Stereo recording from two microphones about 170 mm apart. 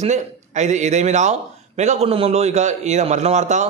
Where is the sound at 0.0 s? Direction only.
45° right (ahead or behind).